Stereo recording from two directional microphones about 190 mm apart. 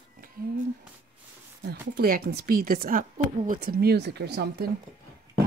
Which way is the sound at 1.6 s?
55° right (ahead or behind).